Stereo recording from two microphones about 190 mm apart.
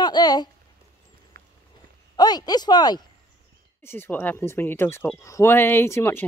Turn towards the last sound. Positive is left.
turn(degrees=15)  # may be behind; listen again after turning